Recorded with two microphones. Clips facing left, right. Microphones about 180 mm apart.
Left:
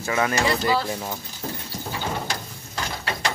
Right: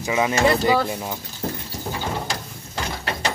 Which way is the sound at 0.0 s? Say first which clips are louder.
Right 3 dB; 15° right (ahead or behind).